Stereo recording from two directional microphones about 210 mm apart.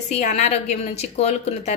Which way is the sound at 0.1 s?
35° left (ahead or behind).